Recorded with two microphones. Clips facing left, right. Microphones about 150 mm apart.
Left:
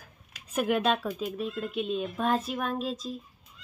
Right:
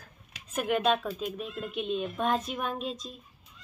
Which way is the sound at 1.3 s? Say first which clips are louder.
Left 3 dB; centre (ahead or behind).